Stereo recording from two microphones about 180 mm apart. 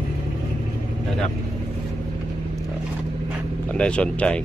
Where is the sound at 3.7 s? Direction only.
5° left (ahead or behind).